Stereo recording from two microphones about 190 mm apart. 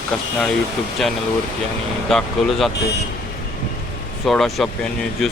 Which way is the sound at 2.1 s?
Centre (ahead or behind).